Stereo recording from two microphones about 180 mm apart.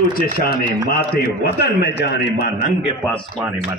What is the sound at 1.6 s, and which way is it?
Speech, 65° left (ahead or behind).